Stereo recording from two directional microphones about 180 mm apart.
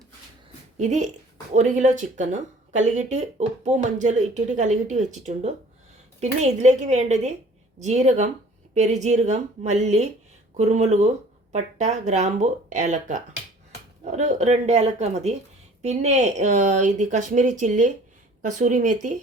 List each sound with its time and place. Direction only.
0.8 s speech: 40° right (ahead or behind)